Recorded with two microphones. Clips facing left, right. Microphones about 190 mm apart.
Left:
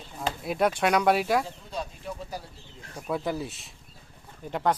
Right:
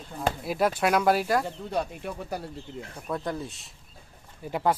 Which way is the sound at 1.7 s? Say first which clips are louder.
Right 4 dB; 65° right (ahead or behind).